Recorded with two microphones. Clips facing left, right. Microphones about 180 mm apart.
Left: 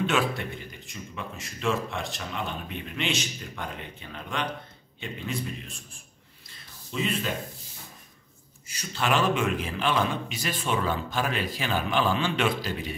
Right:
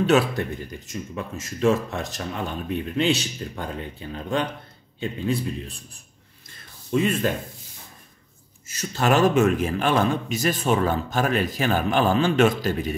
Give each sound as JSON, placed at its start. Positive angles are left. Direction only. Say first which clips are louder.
{"t": 1.1, "sound": "speech", "louder": "right 3 dB", "side_deg": -40}
{"t": 6.9, "sound": "a man's voice", "louder": "right 7 dB", "side_deg": -50}
{"t": 8.6, "sound": "a man's voice", "louder": "right 6 dB", "side_deg": -45}